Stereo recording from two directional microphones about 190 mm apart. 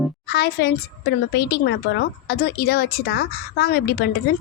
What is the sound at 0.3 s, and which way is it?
A woman's voice, 60° left (ahead or behind).